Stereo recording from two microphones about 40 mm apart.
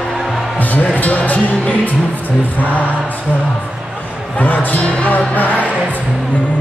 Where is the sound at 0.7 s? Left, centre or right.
Left.